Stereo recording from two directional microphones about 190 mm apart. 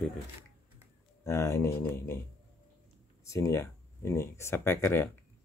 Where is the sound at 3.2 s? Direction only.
15° left (ahead or behind).